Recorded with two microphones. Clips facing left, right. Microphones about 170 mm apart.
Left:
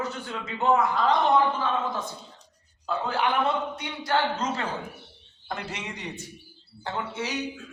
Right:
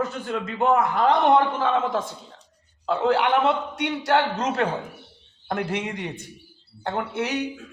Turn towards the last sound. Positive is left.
turn(degrees=-60)  # may be behind; listen again after turning